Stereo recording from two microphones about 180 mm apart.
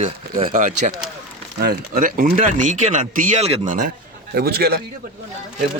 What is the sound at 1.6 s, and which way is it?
Speech, 55° right (ahead or behind).